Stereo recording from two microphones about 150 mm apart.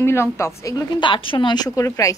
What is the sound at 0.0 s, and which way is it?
A woman's voice, 15° left (ahead or behind).